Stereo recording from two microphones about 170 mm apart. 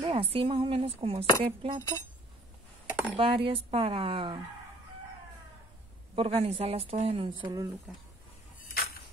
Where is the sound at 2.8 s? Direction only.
10° right (ahead or behind).